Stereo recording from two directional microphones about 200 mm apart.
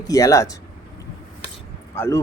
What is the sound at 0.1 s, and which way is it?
Speech, 15° left (ahead or behind).